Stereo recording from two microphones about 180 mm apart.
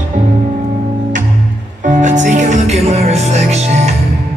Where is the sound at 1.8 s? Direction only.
45° right (ahead or behind).